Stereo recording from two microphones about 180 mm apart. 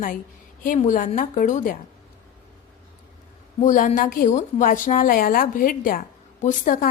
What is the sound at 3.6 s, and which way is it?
A woman's voice, 45° left (ahead or behind).